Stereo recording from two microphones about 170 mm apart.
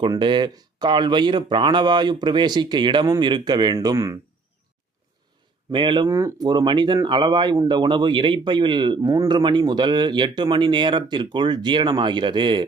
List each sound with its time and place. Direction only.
0.0 s speech: 30° right (ahead or behind)
5.7 s speech: 30° right (ahead or behind)
6.1 s speech: 15° right (ahead or behind)